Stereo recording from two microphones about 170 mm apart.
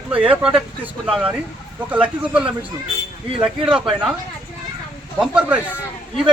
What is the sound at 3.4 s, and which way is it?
Speech, 5° right (ahead or behind).